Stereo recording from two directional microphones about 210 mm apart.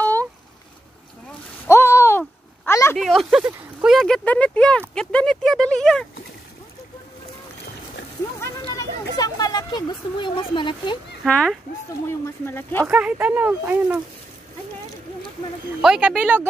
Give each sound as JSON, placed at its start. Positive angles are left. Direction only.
{"t": 1.7, "sound": "a sound", "side_deg": 10}
{"t": 3.0, "sound": "speech", "side_deg": 0}
{"t": 8.4, "sound": "a sound", "side_deg": 15}
{"t": 9.1, "sound": "speech", "side_deg": 20}
{"t": 11.2, "sound": "speech", "side_deg": 5}
{"t": 12.8, "sound": "speech", "side_deg": -5}
{"t": 15.8, "sound": "speech", "side_deg": -5}